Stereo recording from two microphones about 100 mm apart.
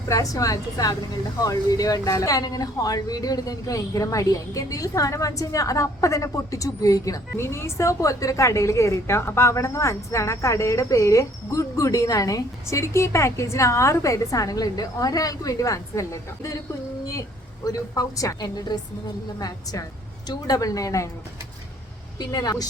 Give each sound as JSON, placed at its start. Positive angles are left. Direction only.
{"t": 0.1, "sound": "speech", "side_deg": 35}
{"t": 17.7, "sound": "speech", "side_deg": 35}
{"t": 22.2, "sound": "speech", "side_deg": 40}